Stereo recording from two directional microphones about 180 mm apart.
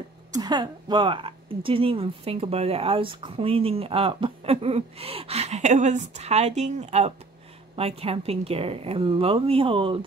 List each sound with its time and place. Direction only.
0.3 s speech: 25° right (ahead or behind)